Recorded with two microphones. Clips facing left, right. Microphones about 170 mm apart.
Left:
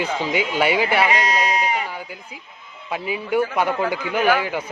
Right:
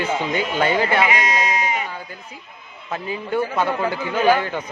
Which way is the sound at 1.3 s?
30° left (ahead or behind).